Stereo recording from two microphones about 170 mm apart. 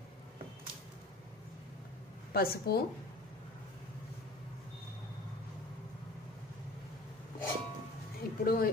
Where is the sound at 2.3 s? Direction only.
65° left (ahead or behind).